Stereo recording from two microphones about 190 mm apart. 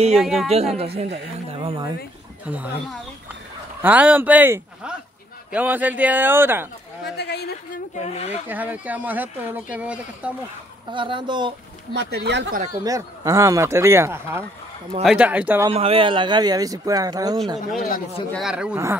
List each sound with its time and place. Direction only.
0.2 s speech: centre (ahead or behind)
0.5 s speech: 30° right (ahead or behind)
3.8 s speech: 10° right (ahead or behind)
7.2 s a sound: 60° left (ahead or behind)
8.0 s speech: 35° left (ahead or behind)
8.3 s speech: 10° right (ahead or behind)
10.9 s speech: 25° right (ahead or behind)
11.9 s speech: 65° right (ahead or behind)
12.7 s speech: 20° right (ahead or behind)
15.7 s speech: 30° right (ahead or behind)
17.6 s speech: 45° left (ahead or behind)
18.3 s speech: 5° right (ahead or behind)